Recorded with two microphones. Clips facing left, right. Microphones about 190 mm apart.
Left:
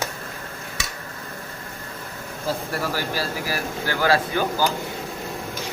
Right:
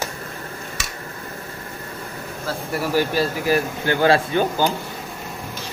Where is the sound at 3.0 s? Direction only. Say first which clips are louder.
Right 7 dB; 20° right (ahead or behind).